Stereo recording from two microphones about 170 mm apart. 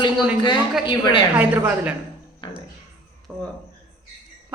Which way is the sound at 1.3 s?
10° right (ahead or behind).